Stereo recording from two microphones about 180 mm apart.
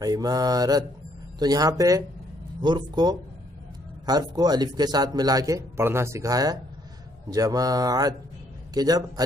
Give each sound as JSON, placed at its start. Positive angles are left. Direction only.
{"t": 0.0, "sound": "speech", "side_deg": -20}